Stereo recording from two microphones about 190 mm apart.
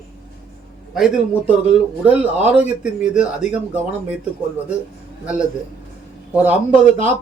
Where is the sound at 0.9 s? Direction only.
Centre (ahead or behind).